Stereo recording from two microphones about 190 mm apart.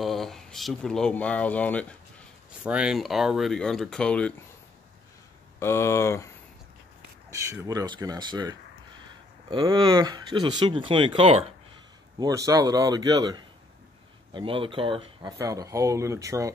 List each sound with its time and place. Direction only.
0.0 s speech: centre (ahead or behind)
2.6 s speech: 5° right (ahead or behind)
5.6 s speech: 15° left (ahead or behind)
7.2 s speech: 15° right (ahead or behind)
12.2 s speech: 20° right (ahead or behind)